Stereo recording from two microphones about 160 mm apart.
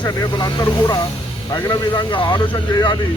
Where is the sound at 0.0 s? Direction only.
25° left (ahead or behind).